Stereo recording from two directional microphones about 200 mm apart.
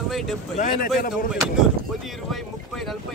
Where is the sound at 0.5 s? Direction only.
40° left (ahead or behind).